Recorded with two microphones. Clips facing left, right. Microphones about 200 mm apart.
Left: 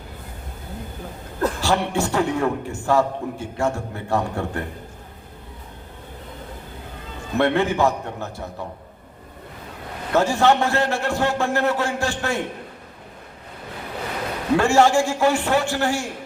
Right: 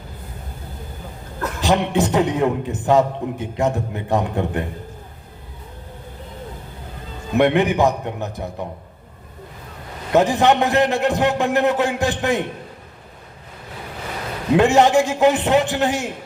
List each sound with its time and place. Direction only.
1.6 s a man's voice: 20° right (ahead or behind)
7.3 s a man's voice: 15° right (ahead or behind)
10.1 s a man's voice: 20° right (ahead or behind)
14.5 s a man's voice: 20° right (ahead or behind)